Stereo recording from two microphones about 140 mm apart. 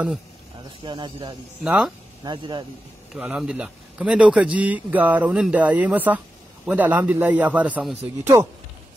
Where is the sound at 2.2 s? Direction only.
35° right (ahead or behind).